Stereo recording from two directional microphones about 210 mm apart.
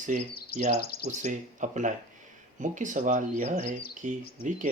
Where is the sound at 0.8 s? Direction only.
45° left (ahead or behind).